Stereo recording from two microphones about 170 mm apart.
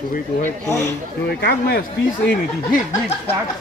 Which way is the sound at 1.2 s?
70° left (ahead or behind).